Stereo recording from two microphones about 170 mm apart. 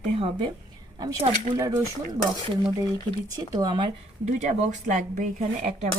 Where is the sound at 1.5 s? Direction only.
20° right (ahead or behind).